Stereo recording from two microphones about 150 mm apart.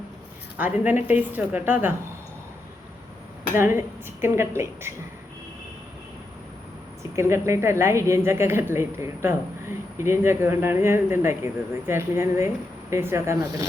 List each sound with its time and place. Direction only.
0.5 s speech: 10° right (ahead or behind)
3.6 s speech: 15° right (ahead or behind)
7.2 s a woman's voice: 20° right (ahead or behind)